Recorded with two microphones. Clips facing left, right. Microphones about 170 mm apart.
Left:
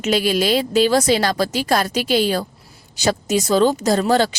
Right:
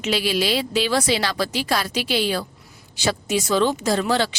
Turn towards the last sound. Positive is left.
turn(degrees=45)  # may be behind; listen again after turning